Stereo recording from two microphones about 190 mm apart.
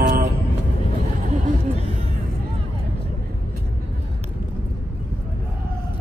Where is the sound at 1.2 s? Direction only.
40° right (ahead or behind).